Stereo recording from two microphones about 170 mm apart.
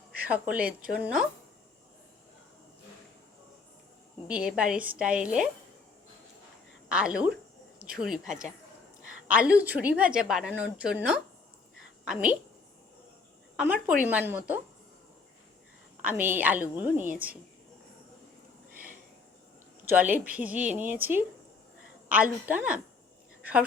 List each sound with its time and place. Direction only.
0.5 s a woman's voice: 10° right (ahead or behind)
4.3 s a woman's voice: 5° right (ahead or behind)
6.8 s a woman's voice: 5° right (ahead or behind)
13.6 s a woman's voice: 10° right (ahead or behind)
16.0 s a woman's voice: 10° right (ahead or behind)
18.7 s a sound: 55° right (ahead or behind)
20.2 s a woman's voice: 10° right (ahead or behind)
23.4 s a sound: 10° right (ahead or behind)